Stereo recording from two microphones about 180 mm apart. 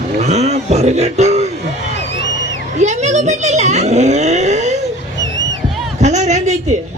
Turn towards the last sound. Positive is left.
turn(degrees=-40)  # may be behind; listen again after turning